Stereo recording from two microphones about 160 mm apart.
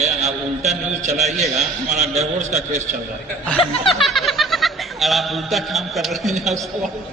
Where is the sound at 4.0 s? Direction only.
Centre (ahead or behind).